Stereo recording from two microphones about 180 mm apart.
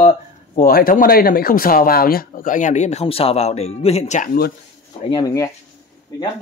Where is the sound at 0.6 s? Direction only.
55° left (ahead or behind); by 4.2 s 40° left (ahead or behind).